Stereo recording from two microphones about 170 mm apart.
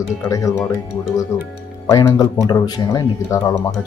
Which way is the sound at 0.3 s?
20° left (ahead or behind).